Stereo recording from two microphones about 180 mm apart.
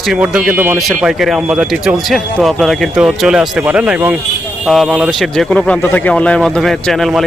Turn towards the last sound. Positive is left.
turn(degrees=0)  # may be behind; listen again after turning